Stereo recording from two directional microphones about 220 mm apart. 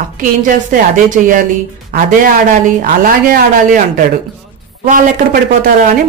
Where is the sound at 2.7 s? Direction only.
40° right (ahead or behind).